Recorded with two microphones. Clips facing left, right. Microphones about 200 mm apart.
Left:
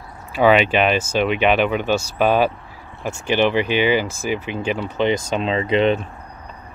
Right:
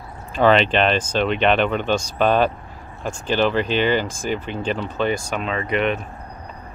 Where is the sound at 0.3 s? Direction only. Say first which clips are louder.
Left 1 dB; 10° left (ahead or behind); by 5.9 s 25° left (ahead or behind).